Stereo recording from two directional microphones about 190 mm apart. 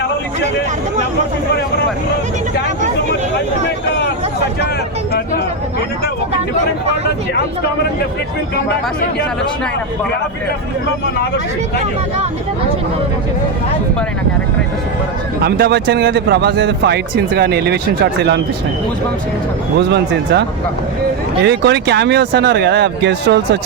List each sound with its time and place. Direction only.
15.4 s a man's voice: 55° right (ahead or behind)
21.4 s a man's voice: 65° right (ahead or behind)